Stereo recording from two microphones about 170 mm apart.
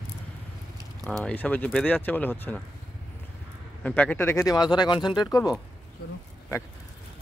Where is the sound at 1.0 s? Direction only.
5° left (ahead or behind).